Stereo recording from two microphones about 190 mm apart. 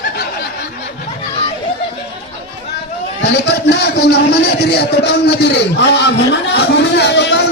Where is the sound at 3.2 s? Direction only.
60° left (ahead or behind).